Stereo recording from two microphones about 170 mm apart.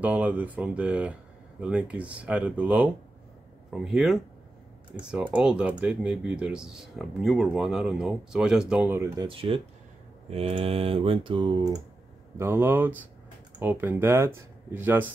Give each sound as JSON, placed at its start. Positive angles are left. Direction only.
{"t": 0.0, "sound": "speech", "side_deg": -10}
{"t": 9.3, "sound": "speech", "side_deg": -35}
{"t": 12.4, "sound": "speech", "side_deg": -15}